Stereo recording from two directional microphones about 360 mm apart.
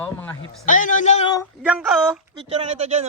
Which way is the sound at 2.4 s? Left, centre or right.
Centre.